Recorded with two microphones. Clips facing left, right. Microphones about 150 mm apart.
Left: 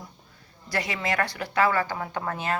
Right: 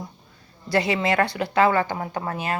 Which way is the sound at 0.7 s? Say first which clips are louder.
Right 7 dB; 30° right (ahead or behind).